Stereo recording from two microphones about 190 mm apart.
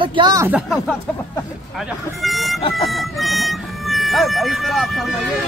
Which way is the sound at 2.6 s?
30° left (ahead or behind).